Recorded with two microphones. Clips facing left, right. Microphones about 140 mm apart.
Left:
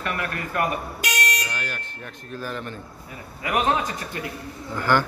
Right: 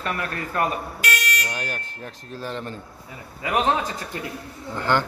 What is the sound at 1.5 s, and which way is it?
Smoke detector, 40° right (ahead or behind).